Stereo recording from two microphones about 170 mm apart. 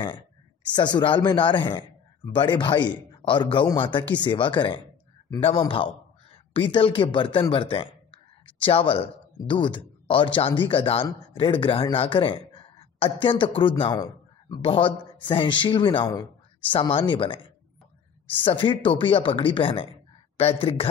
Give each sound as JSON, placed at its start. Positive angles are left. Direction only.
{"t": 0.7, "sound": "a man's voice", "side_deg": 25}
{"t": 16.1, "sound": "a sound", "side_deg": 15}
{"t": 16.7, "sound": "speech", "side_deg": 30}